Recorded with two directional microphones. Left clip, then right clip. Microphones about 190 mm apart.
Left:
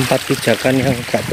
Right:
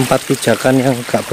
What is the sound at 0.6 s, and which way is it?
Speech, 20° right (ahead or behind).